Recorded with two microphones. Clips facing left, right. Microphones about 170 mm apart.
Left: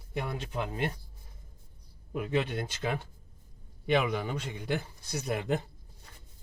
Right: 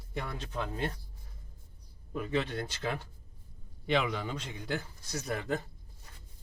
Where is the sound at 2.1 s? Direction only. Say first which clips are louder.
Left 2 dB; 15° left (ahead or behind).